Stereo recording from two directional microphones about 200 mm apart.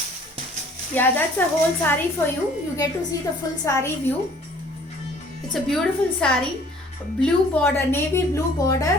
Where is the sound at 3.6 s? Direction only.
15° left (ahead or behind).